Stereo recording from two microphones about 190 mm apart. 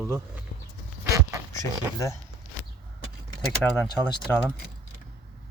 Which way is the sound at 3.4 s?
Centre (ahead or behind).